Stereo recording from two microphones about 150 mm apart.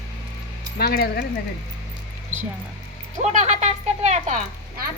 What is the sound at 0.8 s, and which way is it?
Speech, 90° left.